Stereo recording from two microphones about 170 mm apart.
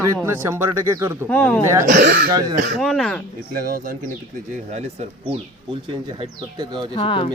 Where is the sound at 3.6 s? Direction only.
55° right (ahead or behind).